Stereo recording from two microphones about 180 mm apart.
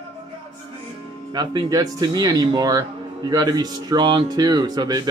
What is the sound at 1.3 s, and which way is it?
Speech, 20° right (ahead or behind).